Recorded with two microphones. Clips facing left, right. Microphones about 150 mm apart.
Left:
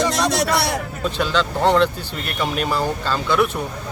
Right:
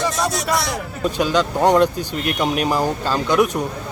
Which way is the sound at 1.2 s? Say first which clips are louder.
Right 2 dB; 15° right (ahead or behind).